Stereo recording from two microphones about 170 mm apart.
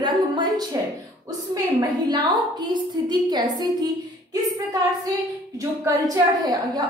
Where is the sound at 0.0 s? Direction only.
25° right (ahead or behind).